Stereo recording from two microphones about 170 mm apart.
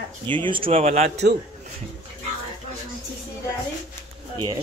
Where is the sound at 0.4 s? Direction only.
30° right (ahead or behind).